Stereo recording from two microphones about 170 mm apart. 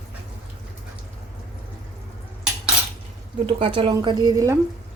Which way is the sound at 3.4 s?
30° right (ahead or behind).